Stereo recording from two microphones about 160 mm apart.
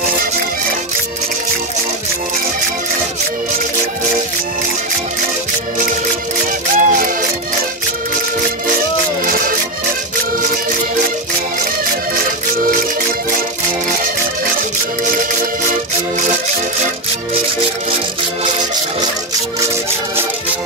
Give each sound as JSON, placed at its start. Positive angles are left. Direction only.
{"t": 6.8, "sound": "music", "side_deg": -55}
{"t": 9.2, "sound": "music", "side_deg": -60}